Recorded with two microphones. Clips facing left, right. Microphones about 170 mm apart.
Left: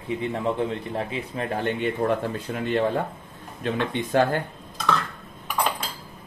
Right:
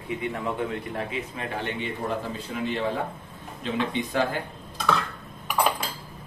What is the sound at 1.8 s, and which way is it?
Speech, 55° left (ahead or behind).